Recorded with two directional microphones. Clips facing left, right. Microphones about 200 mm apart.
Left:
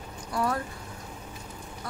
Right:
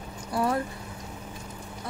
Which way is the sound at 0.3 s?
25° right (ahead or behind).